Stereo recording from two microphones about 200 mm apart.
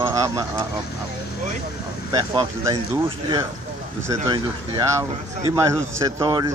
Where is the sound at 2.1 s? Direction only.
20° right (ahead or behind).